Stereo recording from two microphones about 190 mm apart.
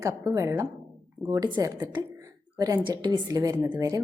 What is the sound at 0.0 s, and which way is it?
A woman's voice, 15° right (ahead or behind).